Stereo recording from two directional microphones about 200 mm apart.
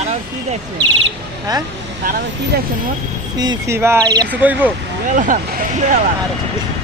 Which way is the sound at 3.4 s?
15° right (ahead or behind).